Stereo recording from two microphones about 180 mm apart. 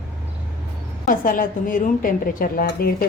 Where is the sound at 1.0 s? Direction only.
50° left (ahead or behind).